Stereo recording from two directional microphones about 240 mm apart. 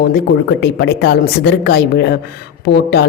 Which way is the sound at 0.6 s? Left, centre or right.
Left.